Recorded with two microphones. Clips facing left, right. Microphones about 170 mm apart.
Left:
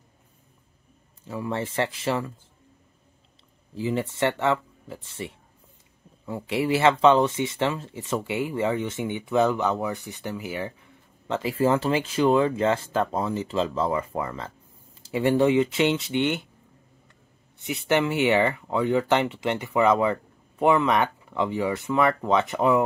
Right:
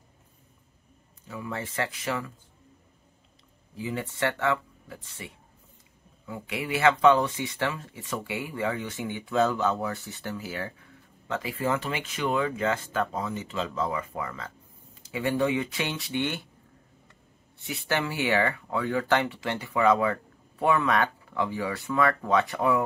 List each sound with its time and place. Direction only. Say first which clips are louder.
1.2 s speech: left 6 dB; 30° left (ahead or behind)
3.7 s speech: left 6 dB; 25° left (ahead or behind)
17.6 s speech: left 6 dB; 20° left (ahead or behind)